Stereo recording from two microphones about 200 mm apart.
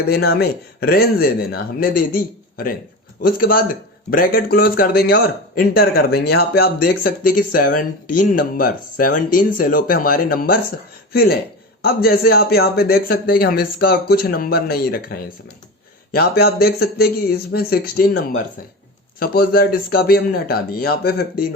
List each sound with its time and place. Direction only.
0.1 s speech: 50° left (ahead or behind)
16.1 s speech: 50° left (ahead or behind)
19.2 s speech: 50° left (ahead or behind)